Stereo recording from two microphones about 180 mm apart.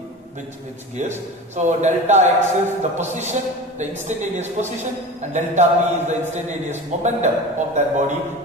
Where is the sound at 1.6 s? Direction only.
40° right (ahead or behind).